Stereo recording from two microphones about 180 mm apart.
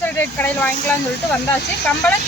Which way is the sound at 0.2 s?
10° left (ahead or behind).